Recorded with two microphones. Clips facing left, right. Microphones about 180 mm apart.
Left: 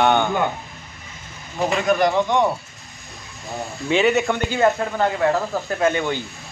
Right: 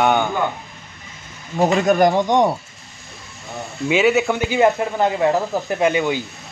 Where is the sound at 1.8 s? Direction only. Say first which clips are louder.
Even; 45° right (ahead or behind).